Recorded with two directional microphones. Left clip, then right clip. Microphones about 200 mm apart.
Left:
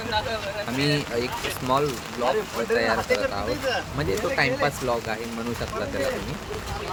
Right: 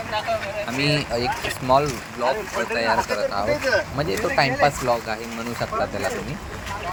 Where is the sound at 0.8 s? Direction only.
5° right (ahead or behind).